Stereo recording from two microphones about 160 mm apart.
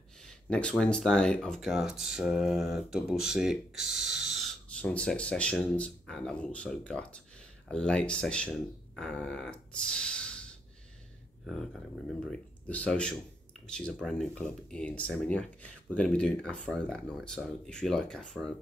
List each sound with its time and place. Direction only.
0.2 s speech: 5° left (ahead or behind)